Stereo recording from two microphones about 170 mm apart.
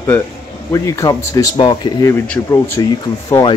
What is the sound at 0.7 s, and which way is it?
Speech, 20° left (ahead or behind).